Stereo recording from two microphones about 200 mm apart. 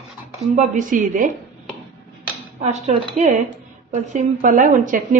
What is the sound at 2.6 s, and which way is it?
A woman's voice, 35° right (ahead or behind).